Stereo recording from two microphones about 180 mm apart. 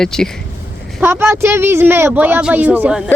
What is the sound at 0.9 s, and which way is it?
Speech, 10° right (ahead or behind).